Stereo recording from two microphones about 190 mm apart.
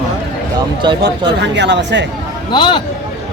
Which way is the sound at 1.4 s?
65° right (ahead or behind).